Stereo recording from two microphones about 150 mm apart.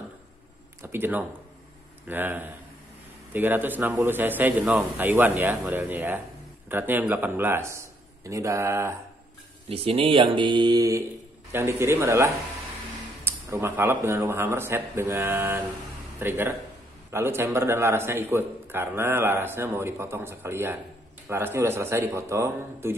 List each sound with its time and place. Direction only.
0.8 s a man's voice: 15° right (ahead or behind)
9.7 s a man's voice: 40° right (ahead or behind); by 22.9 s 15° right (ahead or behind)